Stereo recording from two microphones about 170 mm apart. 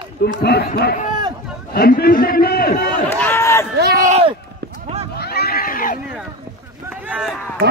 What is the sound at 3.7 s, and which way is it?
Speech, 70° right (ahead or behind).